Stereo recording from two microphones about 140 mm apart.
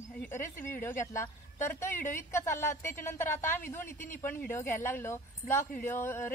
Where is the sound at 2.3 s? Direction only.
15° left (ahead or behind).